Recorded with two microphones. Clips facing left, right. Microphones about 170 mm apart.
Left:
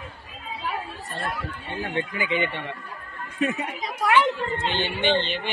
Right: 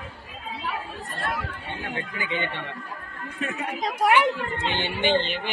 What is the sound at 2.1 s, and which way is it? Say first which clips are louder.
Speech: left 2 dB; 20° left (ahead or behind).